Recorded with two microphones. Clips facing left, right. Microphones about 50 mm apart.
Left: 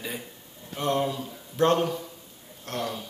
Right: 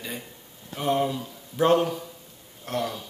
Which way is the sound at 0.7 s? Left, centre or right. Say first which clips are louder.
Right 2 dB; centre.